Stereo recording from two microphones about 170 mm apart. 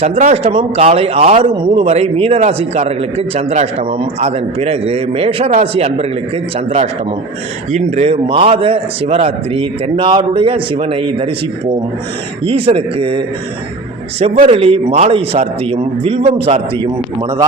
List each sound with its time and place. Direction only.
0.0 s a man's voice: 40° right (ahead or behind)
7.7 s a man's voice: 40° right (ahead or behind)
14.4 s a man's voice: 35° right (ahead or behind)